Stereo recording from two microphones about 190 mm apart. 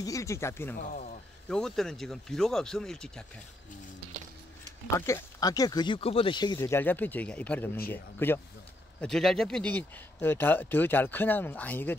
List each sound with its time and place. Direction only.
0.0 s speech: 15° left (ahead or behind)
4.9 s speech: 15° left (ahead or behind)